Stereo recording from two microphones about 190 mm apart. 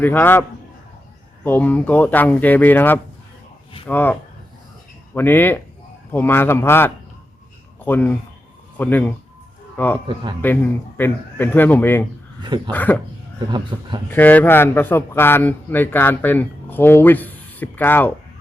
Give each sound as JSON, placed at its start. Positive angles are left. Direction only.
{"t": 0.0, "sound": "a man's voice", "side_deg": 10}
{"t": 1.5, "sound": "a man's voice", "side_deg": 10}
{"t": 12.4, "sound": "a man's voice", "side_deg": -25}
{"t": 12.7, "sound": "a man's voice", "side_deg": 10}
{"t": 13.5, "sound": "a man's voice", "side_deg": -25}
{"t": 14.1, "sound": "a man's voice", "side_deg": 10}